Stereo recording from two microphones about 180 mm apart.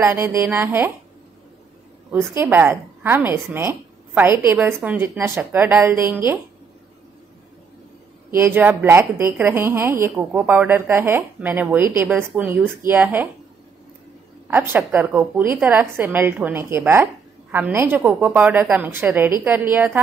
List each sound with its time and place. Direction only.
0.0 s a woman's voice: 10° right (ahead or behind)
2.0 s a woman's voice: 15° right (ahead or behind)
8.4 s a woman's voice: 10° right (ahead or behind)
14.5 s a woman's voice: 10° right (ahead or behind)